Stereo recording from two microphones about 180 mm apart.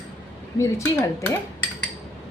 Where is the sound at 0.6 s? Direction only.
15° left (ahead or behind).